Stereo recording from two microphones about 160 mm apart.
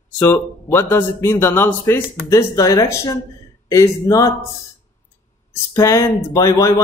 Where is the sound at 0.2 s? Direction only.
15° left (ahead or behind).